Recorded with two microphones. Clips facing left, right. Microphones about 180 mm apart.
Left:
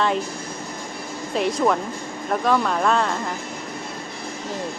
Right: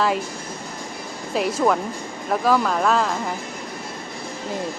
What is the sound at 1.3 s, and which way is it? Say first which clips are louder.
Speech: even; 5° right (ahead or behind).